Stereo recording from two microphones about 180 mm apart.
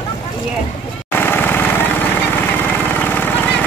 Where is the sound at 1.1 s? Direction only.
10° left (ahead or behind).